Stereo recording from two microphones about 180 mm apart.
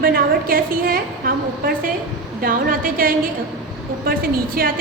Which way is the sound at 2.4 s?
55° right (ahead or behind).